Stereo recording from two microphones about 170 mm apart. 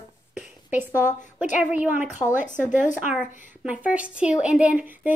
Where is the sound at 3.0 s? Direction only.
5° right (ahead or behind).